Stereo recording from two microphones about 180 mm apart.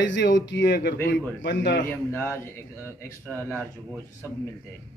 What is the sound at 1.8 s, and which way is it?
Speech, 10° left (ahead or behind).